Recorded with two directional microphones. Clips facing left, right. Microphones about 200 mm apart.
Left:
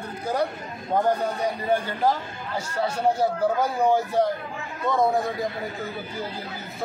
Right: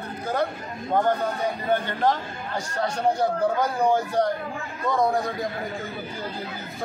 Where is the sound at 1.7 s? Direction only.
5° left (ahead or behind).